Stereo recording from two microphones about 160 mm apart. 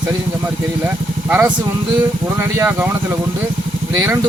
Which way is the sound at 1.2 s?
10° right (ahead or behind).